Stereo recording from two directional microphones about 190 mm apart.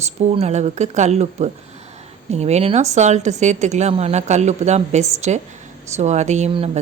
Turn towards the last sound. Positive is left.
turn(degrees=-30)  # may be behind; listen again after turning